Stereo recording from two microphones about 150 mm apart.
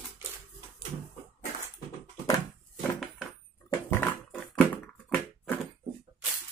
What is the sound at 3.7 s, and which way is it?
Pig, 15° left (ahead or behind).